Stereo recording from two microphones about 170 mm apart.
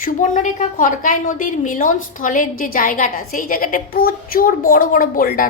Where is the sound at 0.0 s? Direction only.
50° left (ahead or behind).